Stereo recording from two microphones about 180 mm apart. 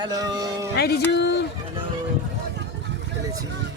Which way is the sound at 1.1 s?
70° left (ahead or behind).